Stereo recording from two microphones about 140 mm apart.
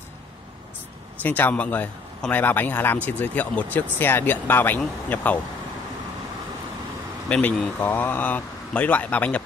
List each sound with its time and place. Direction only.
1.2 s speech: 10° left (ahead or behind)
7.2 s speech: 5° left (ahead or behind)